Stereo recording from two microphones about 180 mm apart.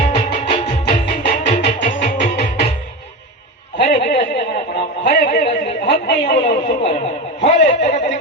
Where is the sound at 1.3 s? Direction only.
40° left (ahead or behind).